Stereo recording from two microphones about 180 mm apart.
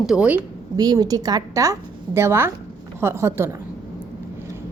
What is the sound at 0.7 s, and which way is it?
A woman's voice, 20° right (ahead or behind).